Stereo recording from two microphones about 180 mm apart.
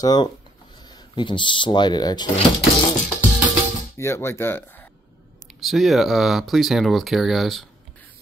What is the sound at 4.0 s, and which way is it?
Speech, 15° left (ahead or behind).